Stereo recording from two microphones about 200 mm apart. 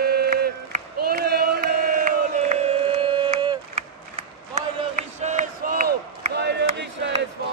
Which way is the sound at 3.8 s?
35° right (ahead or behind).